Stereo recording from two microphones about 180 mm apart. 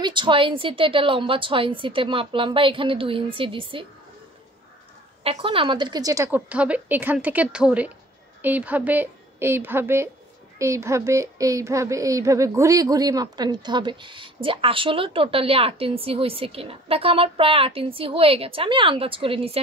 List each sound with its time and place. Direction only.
0.0 s a woman's voice: 25° right (ahead or behind)
5.2 s a woman's voice: 30° right (ahead or behind)